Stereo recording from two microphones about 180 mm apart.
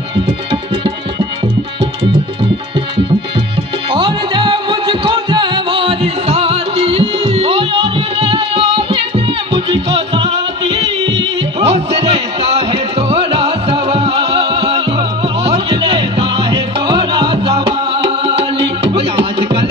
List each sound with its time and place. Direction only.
3.9 s music: 25° right (ahead or behind)